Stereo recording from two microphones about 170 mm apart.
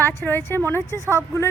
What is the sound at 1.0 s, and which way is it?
Speech, 15° right (ahead or behind).